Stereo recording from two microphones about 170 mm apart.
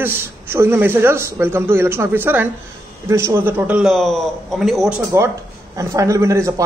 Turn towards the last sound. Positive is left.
turn(degrees=-15)  # may be behind; listen again after turning